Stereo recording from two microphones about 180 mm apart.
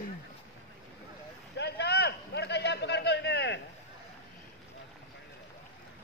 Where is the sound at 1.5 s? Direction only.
70° left (ahead or behind).